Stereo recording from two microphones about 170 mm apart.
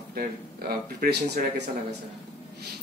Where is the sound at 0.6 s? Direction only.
65° right (ahead or behind).